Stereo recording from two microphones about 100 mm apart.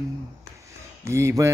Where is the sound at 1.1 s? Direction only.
30° right (ahead or behind).